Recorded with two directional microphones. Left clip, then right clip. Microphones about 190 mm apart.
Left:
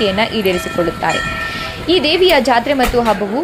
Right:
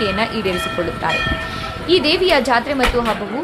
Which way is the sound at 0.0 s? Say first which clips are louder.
Left 4 dB; 15° left (ahead or behind).